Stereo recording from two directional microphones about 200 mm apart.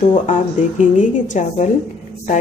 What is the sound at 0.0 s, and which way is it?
A woman's voice, 40° left (ahead or behind).